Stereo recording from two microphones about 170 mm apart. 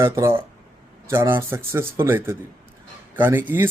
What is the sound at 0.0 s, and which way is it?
Speech, 15° right (ahead or behind).